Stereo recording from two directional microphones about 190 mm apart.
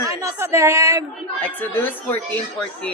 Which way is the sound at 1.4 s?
10° left (ahead or behind).